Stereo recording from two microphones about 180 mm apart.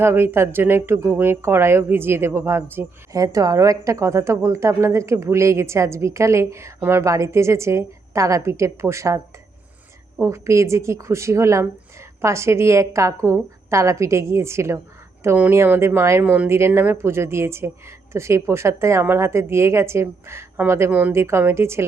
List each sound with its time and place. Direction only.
0.0 s speech: 15° right (ahead or behind)